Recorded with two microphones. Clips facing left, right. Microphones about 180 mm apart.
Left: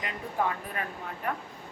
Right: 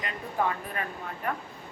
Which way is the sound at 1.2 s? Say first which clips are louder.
Right 1 dB; 10° left (ahead or behind).